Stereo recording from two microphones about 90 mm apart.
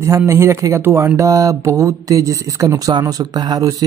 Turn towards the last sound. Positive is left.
turn(degrees=-40)  # may be behind; listen again after turning